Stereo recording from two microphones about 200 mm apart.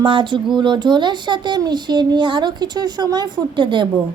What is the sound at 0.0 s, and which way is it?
Speech, 25° right (ahead or behind).